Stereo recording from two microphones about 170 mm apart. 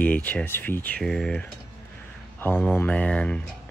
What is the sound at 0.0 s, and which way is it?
Speech, 10° left (ahead or behind).